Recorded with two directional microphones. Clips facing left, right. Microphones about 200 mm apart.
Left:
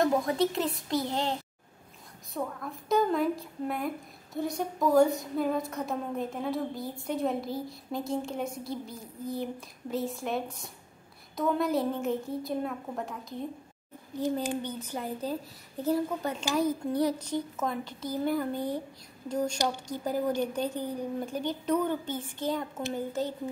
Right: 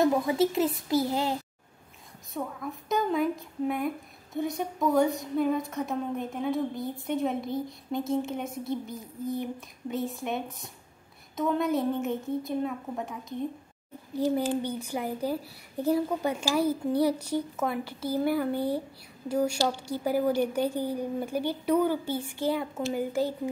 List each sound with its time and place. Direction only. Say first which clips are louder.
0.0 s a woman's voice: right 2 dB; 5° right (ahead or behind)
2.3 s a woman's voice: right 1 dB; centre (ahead or behind)
8.6 s a woman's voice: right 4 dB; 20° right (ahead or behind)
9.6 s a woman's voice: right 1 dB; centre (ahead or behind)
14.6 s a woman's voice: right 4 dB; 10° right (ahead or behind)